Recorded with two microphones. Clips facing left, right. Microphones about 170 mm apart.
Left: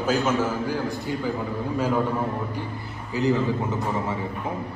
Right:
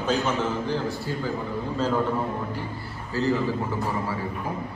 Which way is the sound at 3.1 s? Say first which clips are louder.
Left 2 dB; 15° left (ahead or behind).